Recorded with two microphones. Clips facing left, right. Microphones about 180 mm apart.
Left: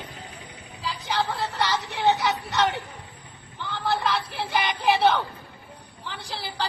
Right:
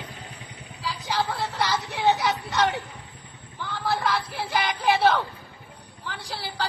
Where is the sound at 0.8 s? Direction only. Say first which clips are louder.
Even; centre (ahead or behind).